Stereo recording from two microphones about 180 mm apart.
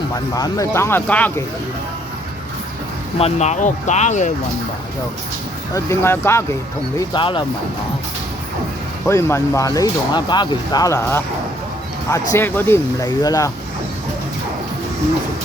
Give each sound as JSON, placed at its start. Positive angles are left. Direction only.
{"t": 0.3, "sound": "speech", "side_deg": 20}
{"t": 3.2, "sound": "speech", "side_deg": 35}
{"t": 5.7, "sound": "speech", "side_deg": 15}
{"t": 7.2, "sound": "speech", "side_deg": 25}
{"t": 9.0, "sound": "speech", "side_deg": 15}